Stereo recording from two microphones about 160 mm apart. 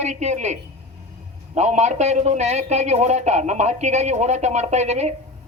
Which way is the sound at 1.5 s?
45° right (ahead or behind).